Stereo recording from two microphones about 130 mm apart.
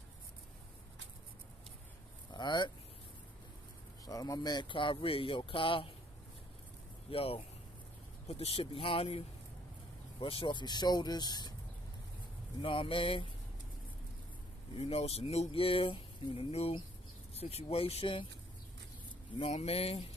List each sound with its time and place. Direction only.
2.3 s speech: 35° left (ahead or behind)
4.0 s speech: 30° left (ahead or behind)
7.1 s speech: 45° left (ahead or behind)
10.2 s speech: 40° left (ahead or behind)
12.6 s speech: 40° left (ahead or behind)
14.8 s speech: 50° left (ahead or behind)
19.3 s speech: 50° left (ahead or behind)